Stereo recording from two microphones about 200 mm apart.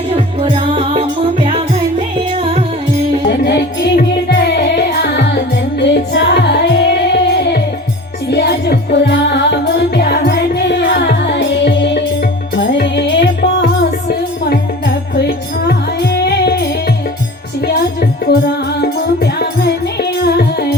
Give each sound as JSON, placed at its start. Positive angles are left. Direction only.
{"t": 0.1, "sound": "music", "side_deg": -25}
{"t": 2.4, "sound": "music", "side_deg": -30}
{"t": 3.2, "sound": "music", "side_deg": 55}
{"t": 8.3, "sound": "music", "side_deg": 55}
{"t": 15.3, "sound": "music", "side_deg": 55}
{"t": 18.3, "sound": "music", "side_deg": 55}